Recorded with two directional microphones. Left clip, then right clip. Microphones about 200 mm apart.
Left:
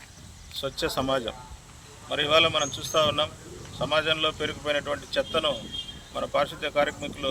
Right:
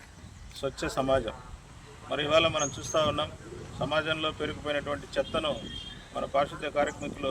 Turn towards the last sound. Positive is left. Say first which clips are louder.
# left 3 dB
turn(degrees=0)  # may be behind; listen again after turning